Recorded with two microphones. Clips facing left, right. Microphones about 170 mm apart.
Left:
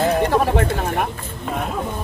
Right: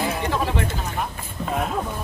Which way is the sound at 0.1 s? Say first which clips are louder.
Left 7 dB; 55° left (ahead or behind).